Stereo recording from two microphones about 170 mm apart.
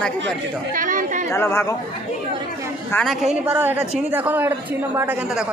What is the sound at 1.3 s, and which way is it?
Speech, 15° left (ahead or behind).